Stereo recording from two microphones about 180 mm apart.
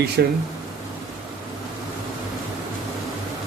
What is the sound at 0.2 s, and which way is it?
Speech, 70° right (ahead or behind).